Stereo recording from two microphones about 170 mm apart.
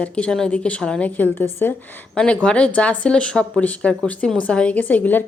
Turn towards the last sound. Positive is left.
turn(degrees=10)  # may be behind; listen again after turning